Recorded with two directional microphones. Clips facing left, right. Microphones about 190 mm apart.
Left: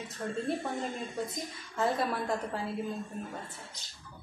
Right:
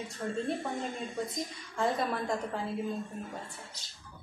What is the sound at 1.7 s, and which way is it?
Speech, 5° left (ahead or behind).